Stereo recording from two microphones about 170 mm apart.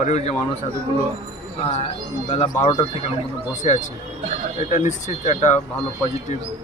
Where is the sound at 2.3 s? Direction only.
40° left (ahead or behind).